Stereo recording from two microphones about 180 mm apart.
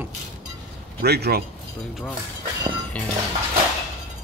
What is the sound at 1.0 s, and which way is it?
Speech, 60° right (ahead or behind).